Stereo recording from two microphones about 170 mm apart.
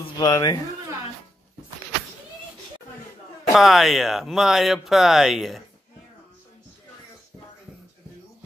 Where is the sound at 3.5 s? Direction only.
Centre (ahead or behind).